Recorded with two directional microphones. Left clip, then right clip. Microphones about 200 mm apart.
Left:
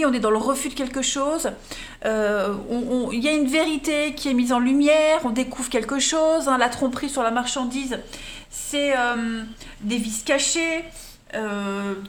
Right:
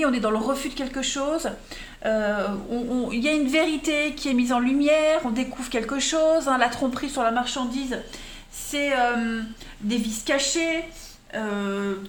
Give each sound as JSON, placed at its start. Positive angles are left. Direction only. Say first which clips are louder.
{"t": 0.0, "sound": "speech", "louder": "left 3 dB", "side_deg": 25}